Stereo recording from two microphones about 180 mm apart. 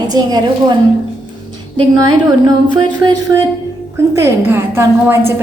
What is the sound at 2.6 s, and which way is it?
Music, 25° right (ahead or behind).